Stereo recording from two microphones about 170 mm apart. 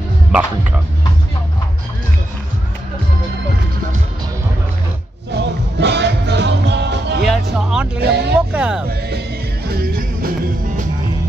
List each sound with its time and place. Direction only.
0.3 s music: 5° right (ahead or behind)
5.3 s music: 85° right
7.2 s music: 5° right (ahead or behind)
8.0 s speech: 75° right (ahead or behind)
8.4 s music: 5° right (ahead or behind)
9.7 s music: 60° right (ahead or behind)